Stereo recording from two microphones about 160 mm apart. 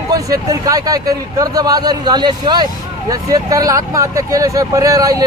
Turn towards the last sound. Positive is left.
turn(degrees=-20)  # may be behind; listen again after turning